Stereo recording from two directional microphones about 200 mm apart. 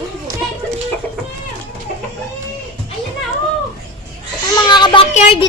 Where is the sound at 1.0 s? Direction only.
5° left (ahead or behind).